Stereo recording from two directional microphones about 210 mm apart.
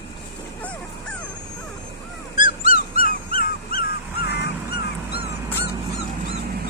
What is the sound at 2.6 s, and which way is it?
Dog, 40° left (ahead or behind).